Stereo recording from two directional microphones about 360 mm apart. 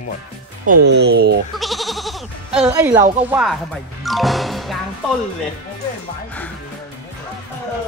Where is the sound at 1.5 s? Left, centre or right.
Centre.